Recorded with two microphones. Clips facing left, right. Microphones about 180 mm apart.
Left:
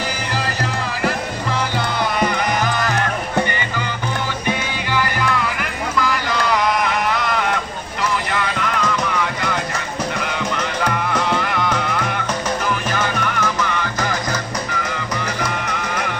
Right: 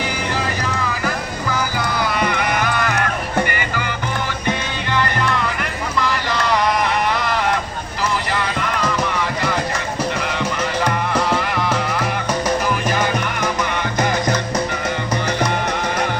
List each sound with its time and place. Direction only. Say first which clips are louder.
1.0 s music: left 1 dB; 30° left (ahead or behind)
6.0 s boat: even; centre (ahead or behind)
11.1 s music: right 1 dB; 5° right (ahead or behind)
15.4 s music: right 4 dB; 35° right (ahead or behind)